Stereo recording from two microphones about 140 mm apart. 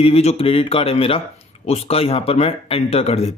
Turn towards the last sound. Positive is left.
turn(degrees=50)  # may be behind; listen again after turning